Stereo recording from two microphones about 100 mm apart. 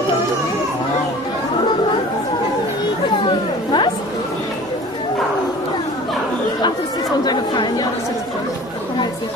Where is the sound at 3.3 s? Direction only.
50° left (ahead or behind).